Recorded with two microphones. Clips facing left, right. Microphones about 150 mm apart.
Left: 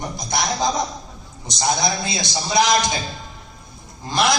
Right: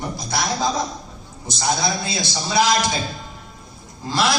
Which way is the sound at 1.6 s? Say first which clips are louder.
Left 1 dB; 20° left (ahead or behind).